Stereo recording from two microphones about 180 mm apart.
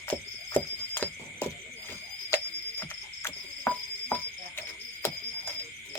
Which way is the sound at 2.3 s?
10° left (ahead or behind).